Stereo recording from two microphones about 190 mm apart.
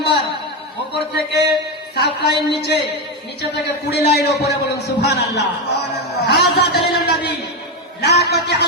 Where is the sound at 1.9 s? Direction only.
60° left (ahead or behind).